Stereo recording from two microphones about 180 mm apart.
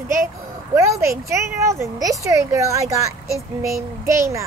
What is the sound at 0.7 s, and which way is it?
Speech, 15° right (ahead or behind).